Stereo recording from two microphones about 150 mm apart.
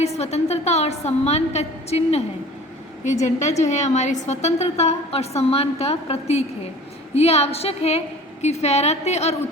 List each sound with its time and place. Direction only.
0.0 s a woman's voice: 45° left (ahead or behind)